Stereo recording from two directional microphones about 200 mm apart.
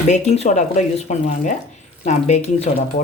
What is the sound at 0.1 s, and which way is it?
Speech, 35° left (ahead or behind).